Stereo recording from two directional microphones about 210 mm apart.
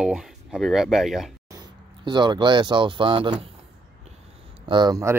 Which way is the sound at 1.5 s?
20° right (ahead or behind).